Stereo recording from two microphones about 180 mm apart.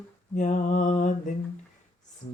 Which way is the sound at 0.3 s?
45° left (ahead or behind).